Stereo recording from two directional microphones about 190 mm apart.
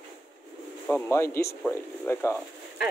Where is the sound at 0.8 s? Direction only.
10° left (ahead or behind).